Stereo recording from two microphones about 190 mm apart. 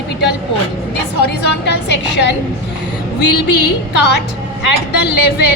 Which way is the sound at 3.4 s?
65° left (ahead or behind).